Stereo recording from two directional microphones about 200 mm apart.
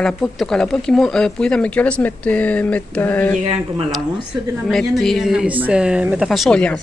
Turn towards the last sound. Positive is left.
turn(degrees=5)  # may be behind; listen again after turning